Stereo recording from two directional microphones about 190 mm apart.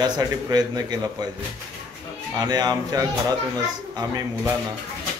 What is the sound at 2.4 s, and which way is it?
A man's voice, 20° right (ahead or behind).